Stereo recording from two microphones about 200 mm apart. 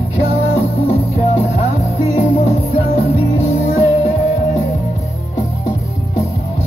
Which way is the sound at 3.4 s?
35° left (ahead or behind).